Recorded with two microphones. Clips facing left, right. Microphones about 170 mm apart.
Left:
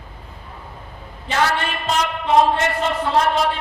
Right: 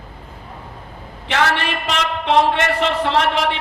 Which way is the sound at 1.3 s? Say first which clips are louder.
Right 1 dB; 75° right (ahead or behind).